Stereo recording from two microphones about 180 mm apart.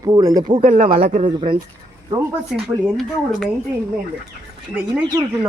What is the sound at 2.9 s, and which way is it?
Speech, centre (ahead or behind).